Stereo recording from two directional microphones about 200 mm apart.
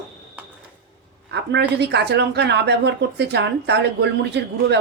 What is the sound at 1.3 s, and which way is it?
Speech, 60° right (ahead or behind).